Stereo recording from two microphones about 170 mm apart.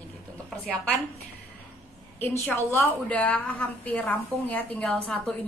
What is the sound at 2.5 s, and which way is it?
A woman's voice, 10° left (ahead or behind).